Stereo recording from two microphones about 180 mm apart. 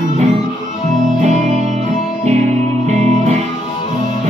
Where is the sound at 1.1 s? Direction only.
40° right (ahead or behind).